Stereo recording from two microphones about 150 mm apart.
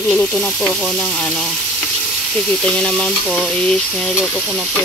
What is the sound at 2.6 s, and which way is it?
Stir, 5° left (ahead or behind).